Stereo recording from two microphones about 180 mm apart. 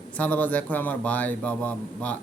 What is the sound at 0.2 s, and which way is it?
A man's voice, 10° left (ahead or behind).